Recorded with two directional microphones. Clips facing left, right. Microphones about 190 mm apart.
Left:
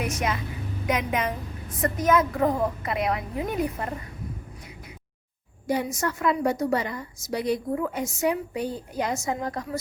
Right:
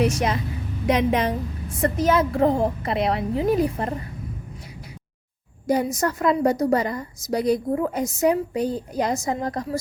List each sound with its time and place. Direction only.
0.0 s a woman's voice: 30° right (ahead or behind)
5.6 s a woman's voice: 40° right (ahead or behind)